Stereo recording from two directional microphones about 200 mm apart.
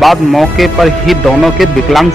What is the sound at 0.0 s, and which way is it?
Speech, centre (ahead or behind).